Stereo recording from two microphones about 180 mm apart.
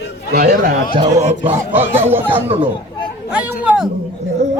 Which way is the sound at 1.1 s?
40° right (ahead or behind).